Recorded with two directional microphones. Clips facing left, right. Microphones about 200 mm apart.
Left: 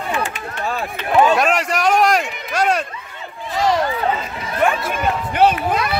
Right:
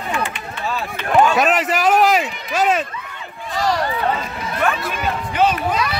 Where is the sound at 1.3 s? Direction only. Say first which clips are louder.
Right 1 dB; centre (ahead or behind).